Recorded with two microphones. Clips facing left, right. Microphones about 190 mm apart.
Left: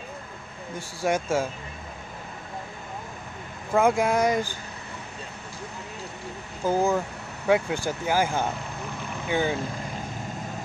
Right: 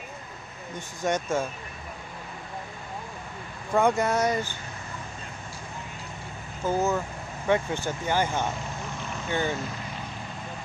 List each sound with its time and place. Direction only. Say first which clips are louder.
0.7 s speech: left 2 dB; 10° left (ahead or behind)
3.7 s speech: left 2 dB; 10° left (ahead or behind)
6.6 s speech: left 2 dB; 10° left (ahead or behind)